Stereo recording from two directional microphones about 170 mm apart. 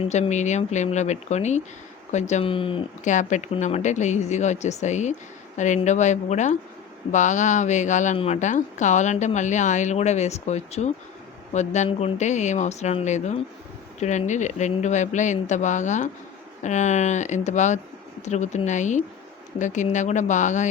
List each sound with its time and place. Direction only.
0.0 s speech: 40° left (ahead or behind)
3.0 s speech: 45° left (ahead or behind)